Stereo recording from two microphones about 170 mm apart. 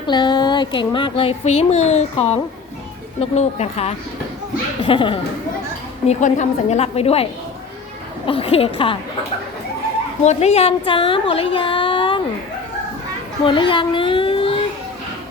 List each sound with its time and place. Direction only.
0.1 s speech: 25° left (ahead or behind)
6.1 s speech: 45° left (ahead or behind)
8.3 s speech: 35° left (ahead or behind)
10.2 s speech: 40° left (ahead or behind)
13.4 s a child's voice: 30° left (ahead or behind)